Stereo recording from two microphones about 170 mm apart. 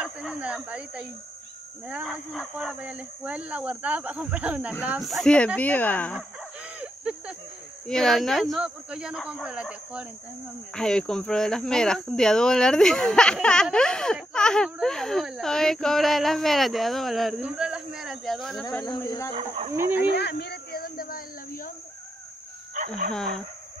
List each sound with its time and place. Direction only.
0.0 s speech: 5° right (ahead or behind); by 6.1 s 10° left (ahead or behind)
6.8 s a sound: 5° right (ahead or behind)
7.8 s speech: 5° left (ahead or behind)
10.7 s speech: 5° left (ahead or behind)
18.9 s speech: 20° left (ahead or behind)
19.3 s speech: 30° right (ahead or behind)
19.7 s speech: 15° right (ahead or behind)
20.0 s a sound: 75° left (ahead or behind); by 21.7 s 55° left (ahead or behind)
22.8 s speech: 55° right (ahead or behind)
23.1 s speech: 5° left (ahead or behind)